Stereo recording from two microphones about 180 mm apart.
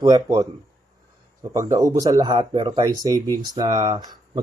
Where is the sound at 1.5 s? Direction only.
20° right (ahead or behind).